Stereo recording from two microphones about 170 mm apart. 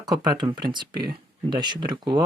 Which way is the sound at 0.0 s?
25° right (ahead or behind).